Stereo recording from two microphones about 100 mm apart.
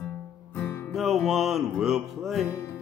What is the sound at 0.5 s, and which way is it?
Music, 20° left (ahead or behind).